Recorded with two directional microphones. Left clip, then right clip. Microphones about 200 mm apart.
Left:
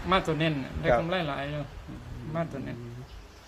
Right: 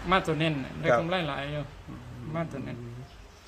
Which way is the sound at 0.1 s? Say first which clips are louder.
Even; 10° right (ahead or behind).